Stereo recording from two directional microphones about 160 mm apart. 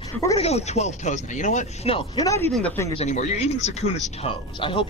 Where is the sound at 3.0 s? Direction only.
45° left (ahead or behind).